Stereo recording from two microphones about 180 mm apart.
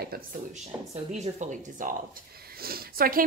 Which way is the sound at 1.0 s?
40° right (ahead or behind).